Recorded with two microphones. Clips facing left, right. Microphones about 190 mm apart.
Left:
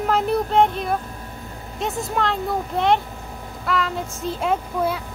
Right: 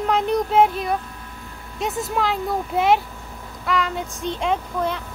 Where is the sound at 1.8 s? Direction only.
Centre (ahead or behind).